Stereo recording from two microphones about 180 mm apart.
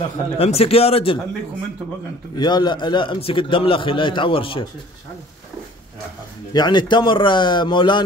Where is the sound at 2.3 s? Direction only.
25° left (ahead or behind).